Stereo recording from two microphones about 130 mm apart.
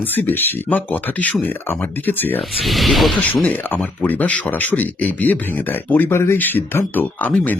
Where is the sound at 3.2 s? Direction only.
15° left (ahead or behind).